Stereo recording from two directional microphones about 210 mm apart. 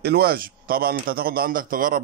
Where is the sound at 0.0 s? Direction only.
50° right (ahead or behind).